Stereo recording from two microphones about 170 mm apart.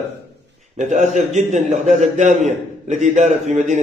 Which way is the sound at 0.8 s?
45° right (ahead or behind).